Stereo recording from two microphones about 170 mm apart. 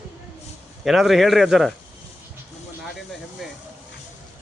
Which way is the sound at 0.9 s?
Centre (ahead or behind).